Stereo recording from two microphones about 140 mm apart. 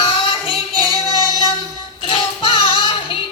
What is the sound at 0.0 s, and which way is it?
Music, 35° left (ahead or behind).